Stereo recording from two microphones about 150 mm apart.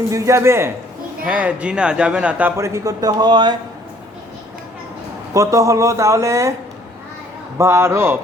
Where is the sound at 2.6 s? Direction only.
20° right (ahead or behind).